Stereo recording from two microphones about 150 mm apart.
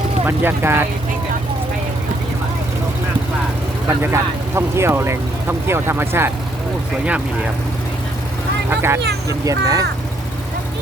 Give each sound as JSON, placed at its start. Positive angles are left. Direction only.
{"t": 0.3, "sound": "speech", "side_deg": -15}
{"t": 3.8, "sound": "speech", "side_deg": -15}
{"t": 8.7, "sound": "speech", "side_deg": -15}